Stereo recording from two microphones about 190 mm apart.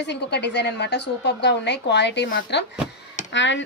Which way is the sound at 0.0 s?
65° left (ahead or behind).